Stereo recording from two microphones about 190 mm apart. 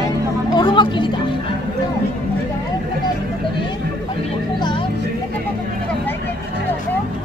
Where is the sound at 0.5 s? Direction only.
25° left (ahead or behind).